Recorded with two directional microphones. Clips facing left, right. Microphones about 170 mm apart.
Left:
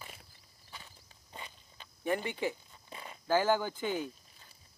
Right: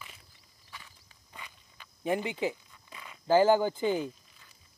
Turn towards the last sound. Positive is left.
turn(degrees=-15)  # may be behind; listen again after turning